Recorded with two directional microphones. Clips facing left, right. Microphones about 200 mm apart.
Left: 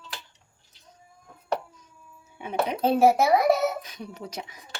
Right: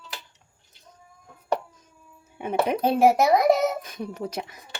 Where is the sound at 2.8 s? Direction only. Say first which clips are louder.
Even; 15° right (ahead or behind).